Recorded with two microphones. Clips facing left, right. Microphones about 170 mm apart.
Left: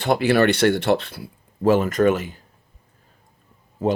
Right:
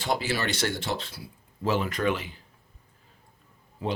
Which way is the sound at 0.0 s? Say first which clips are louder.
Left 11 dB; 60° left (ahead or behind).